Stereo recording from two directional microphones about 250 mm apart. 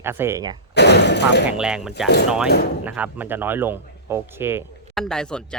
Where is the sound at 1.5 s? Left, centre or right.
Centre.